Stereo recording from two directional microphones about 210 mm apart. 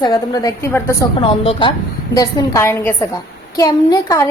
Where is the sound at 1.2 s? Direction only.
25° left (ahead or behind).